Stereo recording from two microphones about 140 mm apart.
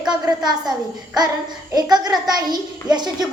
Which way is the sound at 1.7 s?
30° right (ahead or behind).